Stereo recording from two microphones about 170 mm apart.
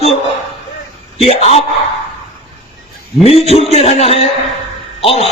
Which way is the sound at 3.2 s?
35° left (ahead or behind).